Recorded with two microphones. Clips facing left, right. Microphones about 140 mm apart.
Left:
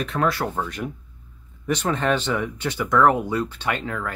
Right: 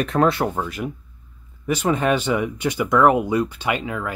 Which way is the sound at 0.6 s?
5° right (ahead or behind).